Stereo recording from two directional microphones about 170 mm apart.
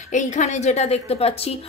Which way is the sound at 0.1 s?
45° left (ahead or behind).